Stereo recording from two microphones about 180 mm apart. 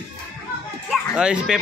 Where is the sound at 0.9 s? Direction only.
5° right (ahead or behind).